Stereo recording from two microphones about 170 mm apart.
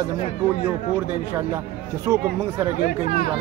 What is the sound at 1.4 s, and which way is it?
Speech, 15° right (ahead or behind).